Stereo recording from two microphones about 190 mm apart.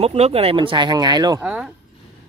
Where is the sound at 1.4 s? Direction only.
5° right (ahead or behind).